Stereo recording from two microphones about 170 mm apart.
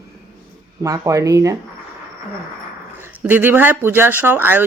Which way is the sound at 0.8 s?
20° right (ahead or behind).